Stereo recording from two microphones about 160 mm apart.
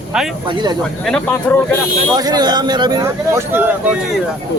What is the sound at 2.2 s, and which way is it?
Speech, 25° right (ahead or behind).